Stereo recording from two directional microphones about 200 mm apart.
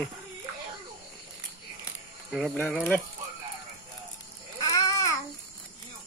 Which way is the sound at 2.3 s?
Centre (ahead or behind).